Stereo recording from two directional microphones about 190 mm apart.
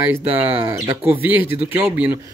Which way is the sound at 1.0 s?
10° right (ahead or behind).